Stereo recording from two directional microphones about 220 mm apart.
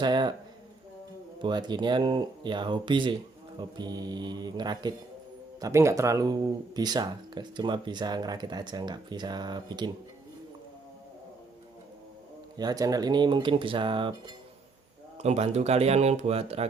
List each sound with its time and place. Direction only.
0.0 s speech: 20° right (ahead or behind)
1.4 s speech: 20° right (ahead or behind)
12.5 s speech: 15° right (ahead or behind)
15.2 s speech: 30° right (ahead or behind)